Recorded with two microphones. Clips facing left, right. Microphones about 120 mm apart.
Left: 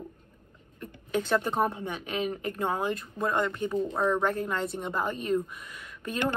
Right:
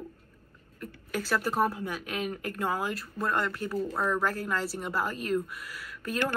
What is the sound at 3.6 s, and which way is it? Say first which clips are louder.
Speech: left 3 dB; 20° left (ahead or behind).